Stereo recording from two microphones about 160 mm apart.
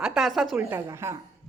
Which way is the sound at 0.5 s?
15° right (ahead or behind).